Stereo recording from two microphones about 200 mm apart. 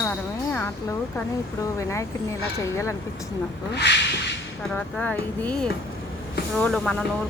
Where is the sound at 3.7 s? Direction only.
60° left (ahead or behind).